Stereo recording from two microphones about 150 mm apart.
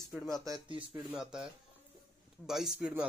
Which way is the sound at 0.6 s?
35° right (ahead or behind).